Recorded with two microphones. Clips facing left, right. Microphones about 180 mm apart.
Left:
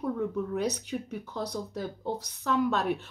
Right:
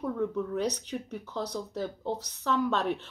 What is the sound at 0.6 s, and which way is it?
Speech, 10° left (ahead or behind).